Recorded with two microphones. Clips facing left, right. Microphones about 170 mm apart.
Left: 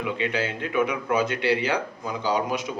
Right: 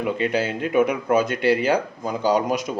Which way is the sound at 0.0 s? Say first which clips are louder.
Right 4 dB; 45° right (ahead or behind).